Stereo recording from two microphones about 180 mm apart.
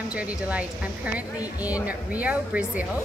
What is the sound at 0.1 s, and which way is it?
A woman's voice, 5° right (ahead or behind).